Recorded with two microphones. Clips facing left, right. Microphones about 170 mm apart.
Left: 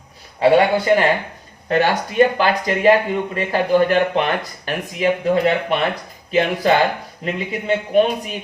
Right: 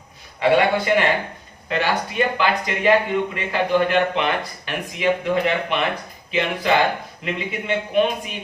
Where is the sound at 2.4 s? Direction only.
40° left (ahead or behind).